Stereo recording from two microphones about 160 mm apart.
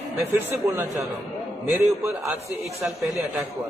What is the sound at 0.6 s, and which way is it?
A man's voice, 15° right (ahead or behind).